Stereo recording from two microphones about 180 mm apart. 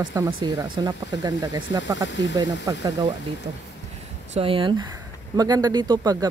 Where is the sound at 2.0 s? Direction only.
75° left (ahead or behind).